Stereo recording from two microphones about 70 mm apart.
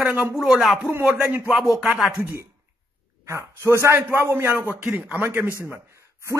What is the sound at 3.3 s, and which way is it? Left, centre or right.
A man's voice, right.